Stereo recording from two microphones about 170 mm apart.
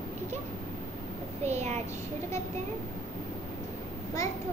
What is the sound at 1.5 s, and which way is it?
Speech, 40° right (ahead or behind).